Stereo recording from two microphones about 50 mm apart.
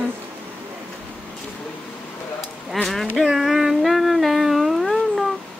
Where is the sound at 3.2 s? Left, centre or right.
Centre.